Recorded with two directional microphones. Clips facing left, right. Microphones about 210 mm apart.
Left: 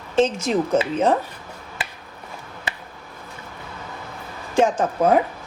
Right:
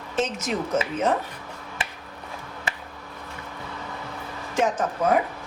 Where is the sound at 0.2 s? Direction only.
30° left (ahead or behind).